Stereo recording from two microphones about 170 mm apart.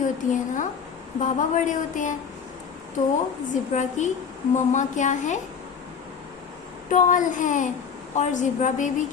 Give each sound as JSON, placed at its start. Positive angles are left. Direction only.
{"t": 0.0, "sound": "speech", "side_deg": 50}
{"t": 3.5, "sound": "speech", "side_deg": 45}
{"t": 6.9, "sound": "speech", "side_deg": 50}